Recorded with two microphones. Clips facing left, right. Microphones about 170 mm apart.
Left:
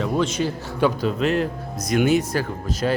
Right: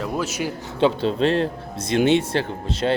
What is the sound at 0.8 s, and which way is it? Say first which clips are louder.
Speech: right 2 dB; 25° right (ahead or behind).